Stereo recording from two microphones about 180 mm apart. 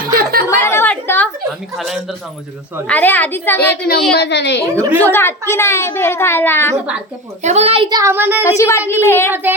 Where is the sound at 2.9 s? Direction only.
10° left (ahead or behind).